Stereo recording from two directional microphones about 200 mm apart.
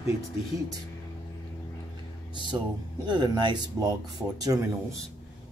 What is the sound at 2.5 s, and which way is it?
Speech, 20° right (ahead or behind).